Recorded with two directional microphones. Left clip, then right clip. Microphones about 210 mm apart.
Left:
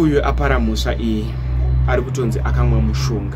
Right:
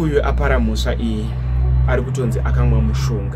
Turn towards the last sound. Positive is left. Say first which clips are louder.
# left 1 dB
turn(degrees=5)  # may be behind; listen again after turning